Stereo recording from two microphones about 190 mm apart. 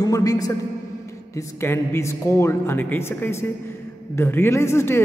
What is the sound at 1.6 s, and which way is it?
A man's voice, 15° left (ahead or behind).